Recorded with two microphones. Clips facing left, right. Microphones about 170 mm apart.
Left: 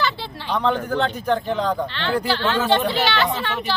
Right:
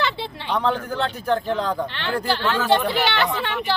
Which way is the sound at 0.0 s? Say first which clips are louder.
Even; 20° right (ahead or behind).